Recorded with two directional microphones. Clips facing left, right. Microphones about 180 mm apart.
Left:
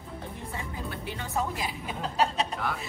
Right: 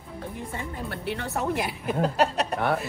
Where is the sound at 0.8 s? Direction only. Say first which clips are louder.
Right 5 dB; 65° right (ahead or behind).